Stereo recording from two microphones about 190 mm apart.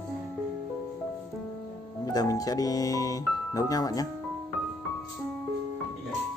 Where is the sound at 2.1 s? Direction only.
20° left (ahead or behind).